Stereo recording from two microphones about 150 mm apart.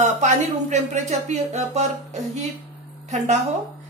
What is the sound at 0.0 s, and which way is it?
A woman's voice, 50° right (ahead or behind).